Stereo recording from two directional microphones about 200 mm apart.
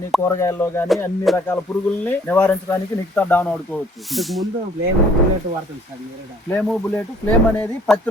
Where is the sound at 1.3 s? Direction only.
Centre (ahead or behind).